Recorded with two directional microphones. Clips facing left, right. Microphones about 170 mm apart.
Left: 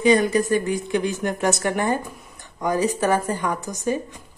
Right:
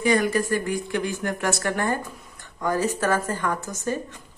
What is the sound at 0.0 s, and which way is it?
A woman's voice, 20° left (ahead or behind).